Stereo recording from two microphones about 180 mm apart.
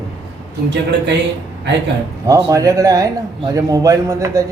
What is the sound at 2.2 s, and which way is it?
A man's voice, 15° right (ahead or behind).